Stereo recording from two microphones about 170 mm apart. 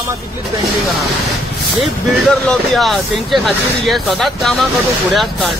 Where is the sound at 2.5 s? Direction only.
Centre (ahead or behind).